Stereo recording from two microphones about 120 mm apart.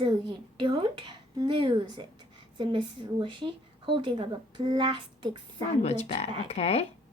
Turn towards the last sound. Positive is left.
turn(degrees=60)  # may be behind; listen again after turning